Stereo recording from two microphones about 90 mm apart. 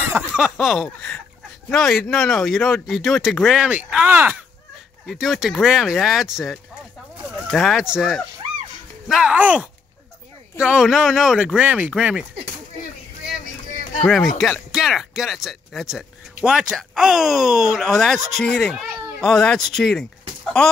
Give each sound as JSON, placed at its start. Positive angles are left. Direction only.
{"t": 0.0, "sound": "a sound", "side_deg": -25}
{"t": 0.4, "sound": "speech", "side_deg": 0}
{"t": 5.0, "sound": "speech", "side_deg": 0}
{"t": 14.0, "sound": "speech", "side_deg": 0}